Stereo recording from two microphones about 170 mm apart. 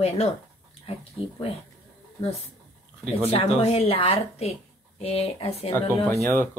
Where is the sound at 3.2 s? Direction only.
35° left (ahead or behind).